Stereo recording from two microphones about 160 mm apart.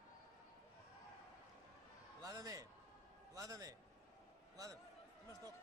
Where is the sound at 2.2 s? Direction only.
20° right (ahead or behind).